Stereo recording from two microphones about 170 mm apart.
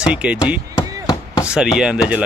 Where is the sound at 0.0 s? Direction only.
5° right (ahead or behind).